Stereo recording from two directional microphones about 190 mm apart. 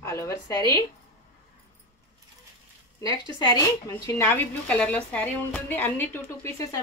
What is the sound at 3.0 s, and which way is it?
A woman's voice, 20° left (ahead or behind).